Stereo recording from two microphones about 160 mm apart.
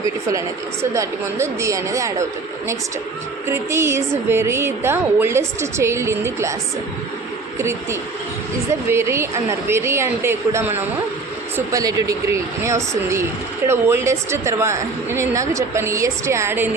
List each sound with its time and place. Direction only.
0.3 s a woman's voice: 20° right (ahead or behind)
3.4 s a woman's voice: 15° right (ahead or behind)
7.6 s a woman's voice: 15° right (ahead or behind)